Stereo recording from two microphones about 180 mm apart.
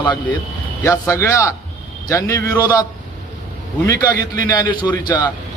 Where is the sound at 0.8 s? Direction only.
15° left (ahead or behind).